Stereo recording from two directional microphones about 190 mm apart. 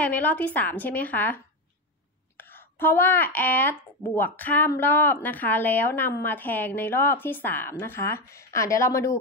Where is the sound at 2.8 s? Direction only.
10° left (ahead or behind).